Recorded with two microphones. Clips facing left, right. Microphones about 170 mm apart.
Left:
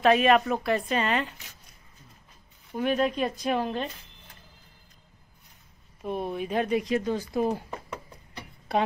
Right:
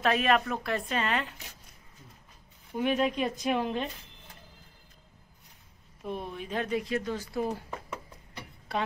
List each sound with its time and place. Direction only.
0.0 s speech: centre (ahead or behind)
2.8 s speech: 10° right (ahead or behind)
6.0 s speech: 50° left (ahead or behind)
6.3 s speech: 10° left (ahead or behind)